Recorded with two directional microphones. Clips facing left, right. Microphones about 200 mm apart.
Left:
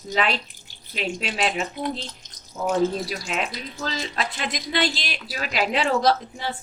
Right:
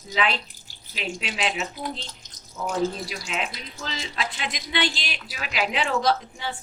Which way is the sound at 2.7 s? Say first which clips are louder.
Left 4 dB; 45° left (ahead or behind).